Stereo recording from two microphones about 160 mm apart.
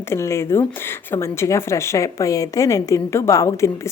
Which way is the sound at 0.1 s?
15° left (ahead or behind).